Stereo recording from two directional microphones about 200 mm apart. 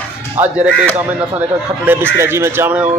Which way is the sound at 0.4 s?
10° right (ahead or behind).